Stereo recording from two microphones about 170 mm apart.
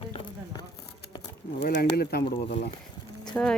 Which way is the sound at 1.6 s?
65° left (ahead or behind).